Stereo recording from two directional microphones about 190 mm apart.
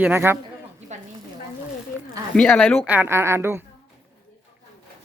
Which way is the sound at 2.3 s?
5° left (ahead or behind).